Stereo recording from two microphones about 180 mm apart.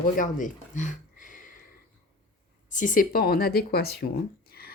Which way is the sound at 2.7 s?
45° left (ahead or behind).